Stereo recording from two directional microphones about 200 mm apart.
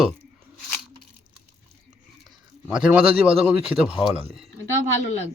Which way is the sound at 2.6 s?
5° right (ahead or behind).